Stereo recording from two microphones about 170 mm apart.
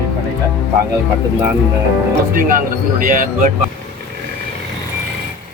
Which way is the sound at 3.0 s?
50° right (ahead or behind).